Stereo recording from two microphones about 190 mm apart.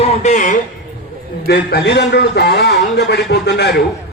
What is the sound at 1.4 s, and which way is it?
A man's voice, 55° left (ahead or behind).